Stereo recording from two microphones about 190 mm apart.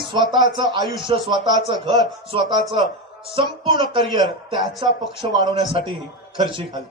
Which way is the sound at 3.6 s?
25° right (ahead or behind).